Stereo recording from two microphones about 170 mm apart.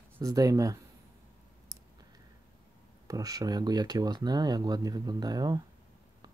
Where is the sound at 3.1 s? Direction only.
20° right (ahead or behind).